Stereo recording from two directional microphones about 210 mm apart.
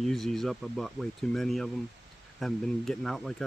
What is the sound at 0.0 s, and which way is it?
Speech, centre (ahead or behind).